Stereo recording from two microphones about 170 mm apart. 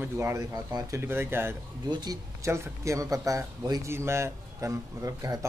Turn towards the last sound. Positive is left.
turn(degrees=-20)  # may be behind; listen again after turning